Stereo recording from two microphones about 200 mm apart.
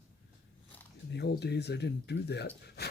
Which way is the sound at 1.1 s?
55° left (ahead or behind).